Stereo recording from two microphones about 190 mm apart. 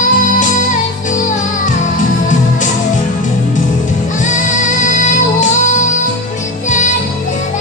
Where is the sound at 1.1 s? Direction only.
40° left (ahead or behind).